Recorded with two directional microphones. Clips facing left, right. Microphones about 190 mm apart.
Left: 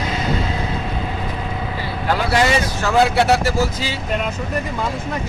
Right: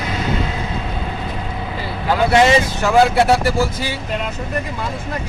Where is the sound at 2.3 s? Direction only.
20° right (ahead or behind).